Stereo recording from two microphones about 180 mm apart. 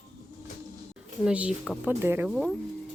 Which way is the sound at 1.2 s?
5° right (ahead or behind).